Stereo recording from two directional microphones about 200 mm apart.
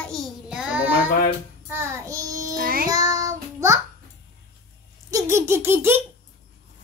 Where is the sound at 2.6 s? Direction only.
45° right (ahead or behind).